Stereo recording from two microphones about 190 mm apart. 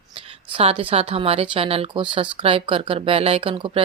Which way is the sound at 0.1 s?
30° right (ahead or behind).